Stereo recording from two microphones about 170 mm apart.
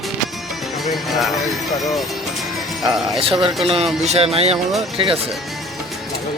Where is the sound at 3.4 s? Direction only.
35° right (ahead or behind).